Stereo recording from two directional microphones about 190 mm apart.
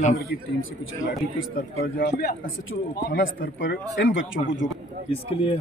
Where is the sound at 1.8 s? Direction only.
55° left (ahead or behind).